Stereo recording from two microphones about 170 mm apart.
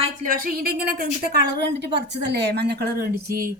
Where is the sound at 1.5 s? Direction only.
85° right.